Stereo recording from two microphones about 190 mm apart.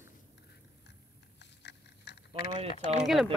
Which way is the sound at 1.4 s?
65° left (ahead or behind).